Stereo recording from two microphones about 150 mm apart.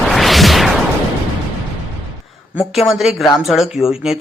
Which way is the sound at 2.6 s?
Centre (ahead or behind).